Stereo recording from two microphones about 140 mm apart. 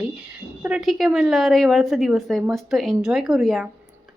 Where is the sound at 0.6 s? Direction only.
5° right (ahead or behind).